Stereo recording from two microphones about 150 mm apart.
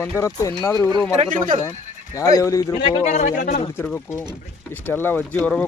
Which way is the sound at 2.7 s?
40° left (ahead or behind).